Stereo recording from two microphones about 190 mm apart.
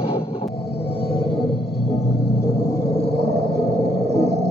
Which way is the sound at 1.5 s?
55° left (ahead or behind).